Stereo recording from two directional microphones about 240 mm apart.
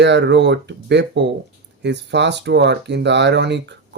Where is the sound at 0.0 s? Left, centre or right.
Right.